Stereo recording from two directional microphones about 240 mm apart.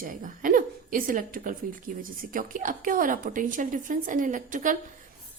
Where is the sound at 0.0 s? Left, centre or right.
Right.